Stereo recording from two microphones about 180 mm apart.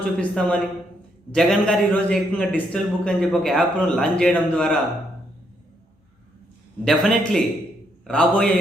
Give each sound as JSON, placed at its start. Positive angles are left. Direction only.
{"t": 0.2, "sound": "a man's voice", "side_deg": 5}
{"t": 6.8, "sound": "a man's voice", "side_deg": 0}